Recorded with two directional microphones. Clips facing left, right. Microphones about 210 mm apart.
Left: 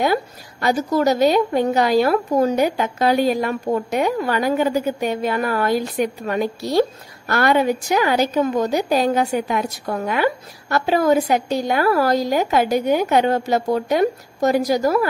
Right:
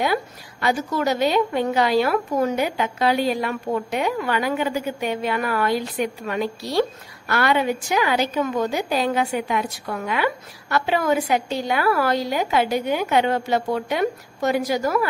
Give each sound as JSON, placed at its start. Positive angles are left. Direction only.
{"t": 0.0, "sound": "a woman's voice", "side_deg": 45}